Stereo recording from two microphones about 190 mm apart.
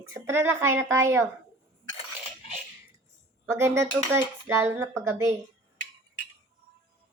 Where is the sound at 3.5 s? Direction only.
15° right (ahead or behind).